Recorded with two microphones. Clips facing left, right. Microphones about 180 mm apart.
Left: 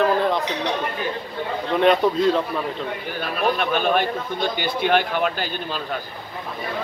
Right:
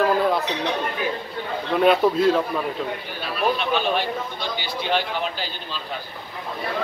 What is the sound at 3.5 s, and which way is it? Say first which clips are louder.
A man's voice: left 2 dB; 50° left (ahead or behind).